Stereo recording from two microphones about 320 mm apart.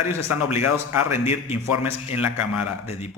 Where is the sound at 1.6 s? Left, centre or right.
Left.